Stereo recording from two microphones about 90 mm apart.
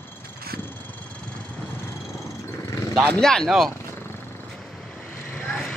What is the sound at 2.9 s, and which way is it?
Speech, 10° left (ahead or behind).